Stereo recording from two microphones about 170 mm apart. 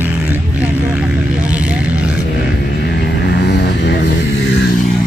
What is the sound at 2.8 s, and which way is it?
Music, 85° left.